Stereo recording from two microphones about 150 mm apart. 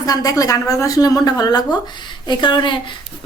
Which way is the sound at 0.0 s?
25° left (ahead or behind).